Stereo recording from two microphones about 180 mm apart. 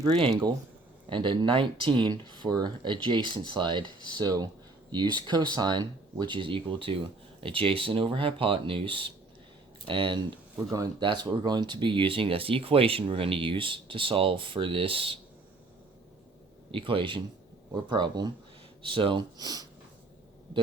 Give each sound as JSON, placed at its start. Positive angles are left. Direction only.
{"t": 0.0, "sound": "speech", "side_deg": -25}
{"t": 16.7, "sound": "speech", "side_deg": -30}